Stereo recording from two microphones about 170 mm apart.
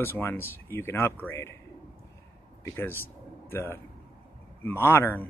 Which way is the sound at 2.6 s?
15° left (ahead or behind).